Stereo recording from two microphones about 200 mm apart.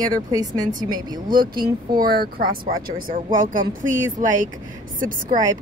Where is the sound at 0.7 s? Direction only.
40° right (ahead or behind).